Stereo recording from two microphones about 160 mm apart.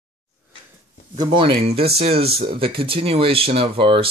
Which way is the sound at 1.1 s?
30° right (ahead or behind).